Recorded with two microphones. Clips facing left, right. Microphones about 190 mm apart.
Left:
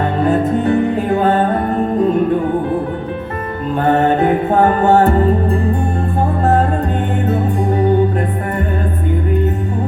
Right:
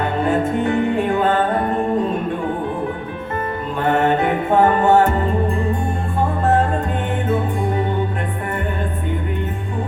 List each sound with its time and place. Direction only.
0.3 s music: 35° left (ahead or behind)
3.8 s music: 35° left (ahead or behind)